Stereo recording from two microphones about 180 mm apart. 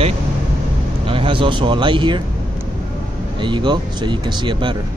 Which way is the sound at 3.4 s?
25° right (ahead or behind).